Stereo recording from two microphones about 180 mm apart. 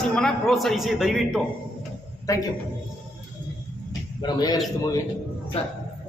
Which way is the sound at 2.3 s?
15° left (ahead or behind).